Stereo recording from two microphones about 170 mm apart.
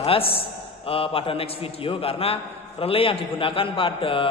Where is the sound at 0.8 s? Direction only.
35° left (ahead or behind).